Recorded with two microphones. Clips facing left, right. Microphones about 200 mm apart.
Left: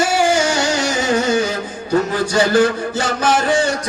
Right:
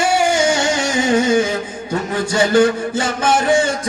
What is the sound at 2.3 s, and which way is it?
Music, 25° right (ahead or behind).